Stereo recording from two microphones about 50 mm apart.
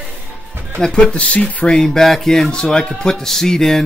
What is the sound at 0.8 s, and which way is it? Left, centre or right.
Speech, centre.